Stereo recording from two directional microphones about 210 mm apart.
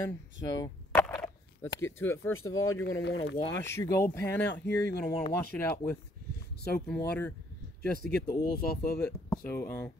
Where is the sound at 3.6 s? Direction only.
15° left (ahead or behind).